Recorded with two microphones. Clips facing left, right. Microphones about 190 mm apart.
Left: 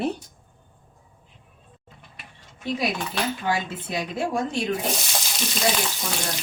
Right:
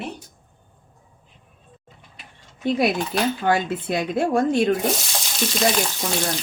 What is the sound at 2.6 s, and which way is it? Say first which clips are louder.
A woman's voice: right 6 dB; 55° right (ahead or behind).